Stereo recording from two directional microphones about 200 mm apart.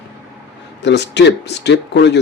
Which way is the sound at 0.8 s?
60° left (ahead or behind).